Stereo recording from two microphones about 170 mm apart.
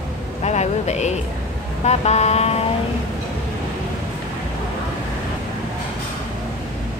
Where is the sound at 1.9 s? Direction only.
40° left (ahead or behind).